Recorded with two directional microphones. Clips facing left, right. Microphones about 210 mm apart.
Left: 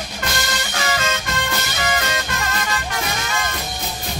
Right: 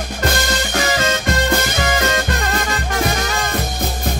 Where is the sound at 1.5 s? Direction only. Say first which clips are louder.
Right 5 dB; 50° right (ahead or behind).